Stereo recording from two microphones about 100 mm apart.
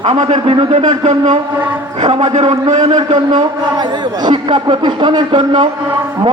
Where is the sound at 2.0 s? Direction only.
90° right.